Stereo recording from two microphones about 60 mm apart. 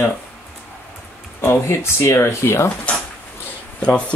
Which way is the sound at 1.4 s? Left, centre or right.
Left.